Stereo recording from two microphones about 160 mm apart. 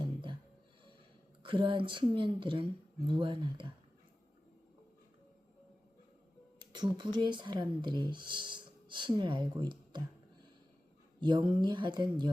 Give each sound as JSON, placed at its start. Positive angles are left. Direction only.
{"t": 0.0, "sound": "music", "side_deg": -30}
{"t": 1.4, "sound": "speech", "side_deg": -30}
{"t": 6.7, "sound": "speech", "side_deg": -30}
{"t": 11.2, "sound": "speech", "side_deg": -30}